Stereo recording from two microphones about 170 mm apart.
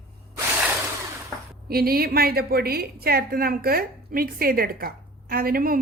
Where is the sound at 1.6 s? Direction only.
60° right (ahead or behind).